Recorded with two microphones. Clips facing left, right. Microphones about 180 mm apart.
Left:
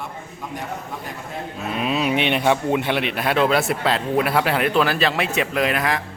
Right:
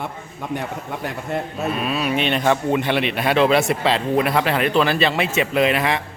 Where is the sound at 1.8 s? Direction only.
20° left (ahead or behind); by 6.0 s centre (ahead or behind).